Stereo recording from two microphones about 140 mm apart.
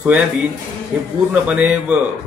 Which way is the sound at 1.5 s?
10° right (ahead or behind).